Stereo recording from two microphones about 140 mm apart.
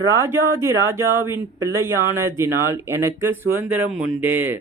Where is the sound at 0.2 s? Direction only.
20° right (ahead or behind).